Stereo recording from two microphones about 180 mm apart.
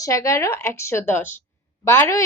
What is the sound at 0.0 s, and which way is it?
A woman's voice, 15° left (ahead or behind).